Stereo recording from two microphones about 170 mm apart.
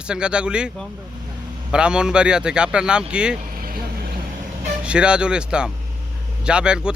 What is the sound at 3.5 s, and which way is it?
Vehicle, 60° right (ahead or behind).